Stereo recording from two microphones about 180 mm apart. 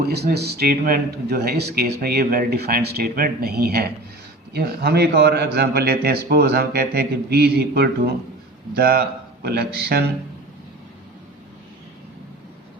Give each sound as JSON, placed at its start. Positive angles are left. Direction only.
{"t": 0.0, "sound": "speech", "side_deg": -65}